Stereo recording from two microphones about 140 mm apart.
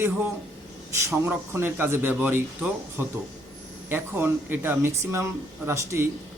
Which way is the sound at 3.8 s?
15° right (ahead or behind).